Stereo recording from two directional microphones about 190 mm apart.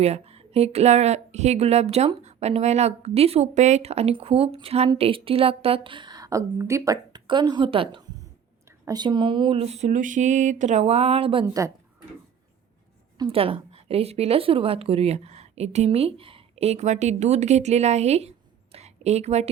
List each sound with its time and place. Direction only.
0.0 s a woman's voice: 35° right (ahead or behind)
11.4 s speech: 15° right (ahead or behind)
13.1 s a woman's voice: 30° right (ahead or behind)